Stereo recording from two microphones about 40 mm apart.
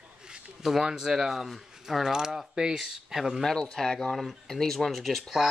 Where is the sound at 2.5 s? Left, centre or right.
Centre.